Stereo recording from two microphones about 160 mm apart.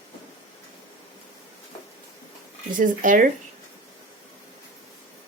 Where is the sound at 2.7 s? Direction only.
55° right (ahead or behind).